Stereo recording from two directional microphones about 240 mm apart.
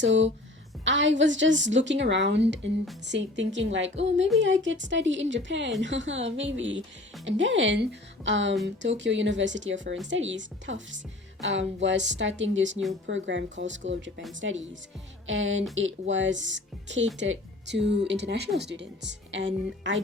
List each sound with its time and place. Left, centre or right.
0.0 s speech: right